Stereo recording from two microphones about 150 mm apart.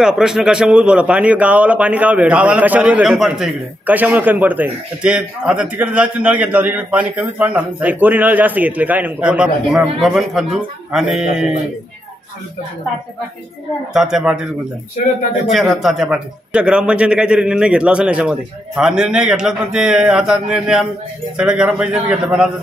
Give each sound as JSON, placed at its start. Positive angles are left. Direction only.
{"t": 0.0, "sound": "a man's voice", "side_deg": -5}
{"t": 13.9, "sound": "a man's voice", "side_deg": -5}
{"t": 15.5, "sound": "a man's voice", "side_deg": 0}